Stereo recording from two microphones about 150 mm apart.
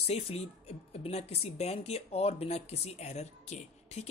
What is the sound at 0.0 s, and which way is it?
Speech, 40° left (ahead or behind).